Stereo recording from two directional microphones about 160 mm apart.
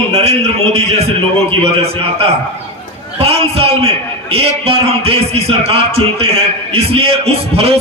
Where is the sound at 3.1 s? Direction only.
40° right (ahead or behind).